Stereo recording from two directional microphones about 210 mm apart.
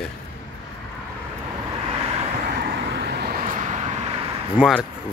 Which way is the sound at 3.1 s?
45° right (ahead or behind).